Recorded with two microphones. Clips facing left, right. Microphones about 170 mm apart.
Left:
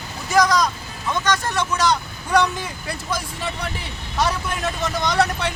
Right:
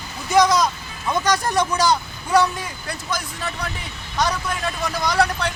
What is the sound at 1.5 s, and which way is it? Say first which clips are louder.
Speech: right 2 dB; 10° right (ahead or behind).